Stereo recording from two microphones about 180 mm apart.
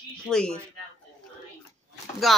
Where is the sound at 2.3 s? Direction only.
Centre (ahead or behind).